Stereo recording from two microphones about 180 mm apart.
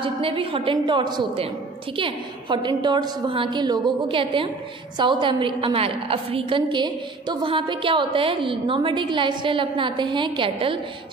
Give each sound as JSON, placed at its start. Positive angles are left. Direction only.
{"t": 0.0, "sound": "a woman's voice", "side_deg": -30}